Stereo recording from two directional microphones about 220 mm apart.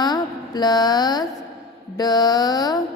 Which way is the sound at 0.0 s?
20° left (ahead or behind).